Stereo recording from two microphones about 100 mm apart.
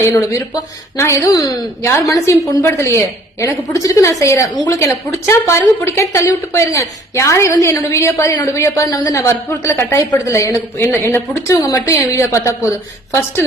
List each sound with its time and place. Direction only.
0.0 s a woman's voice: 25° left (ahead or behind)
4.8 s a woman's voice: 30° left (ahead or behind)